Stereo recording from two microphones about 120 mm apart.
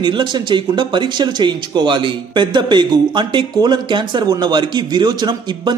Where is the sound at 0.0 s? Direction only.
40° right (ahead or behind).